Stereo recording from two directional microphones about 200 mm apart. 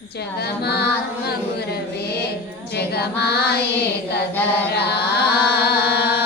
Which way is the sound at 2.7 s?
55° left (ahead or behind).